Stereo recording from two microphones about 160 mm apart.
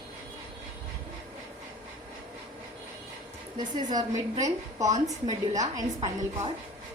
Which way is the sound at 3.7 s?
25° right (ahead or behind).